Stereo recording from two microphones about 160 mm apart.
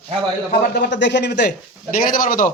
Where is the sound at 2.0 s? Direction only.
60° left (ahead or behind).